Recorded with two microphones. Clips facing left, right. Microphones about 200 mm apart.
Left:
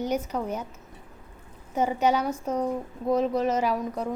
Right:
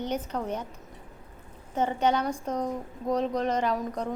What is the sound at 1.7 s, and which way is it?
A woman's voice, 10° left (ahead or behind).